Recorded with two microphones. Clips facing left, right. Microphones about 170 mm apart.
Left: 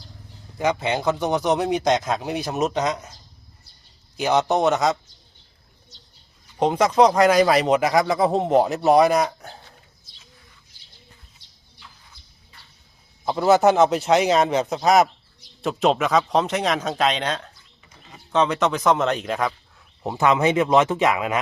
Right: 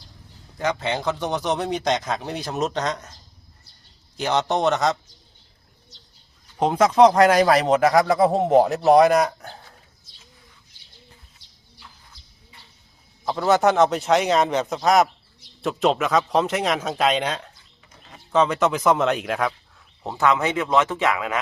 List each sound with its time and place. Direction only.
0.6 s speech: 10° left (ahead or behind)
4.2 s a man's voice: 10° left (ahead or behind)
6.6 s a man's voice: centre (ahead or behind)
13.3 s a man's voice: 5° left (ahead or behind)
20.0 s speech: 15° left (ahead or behind)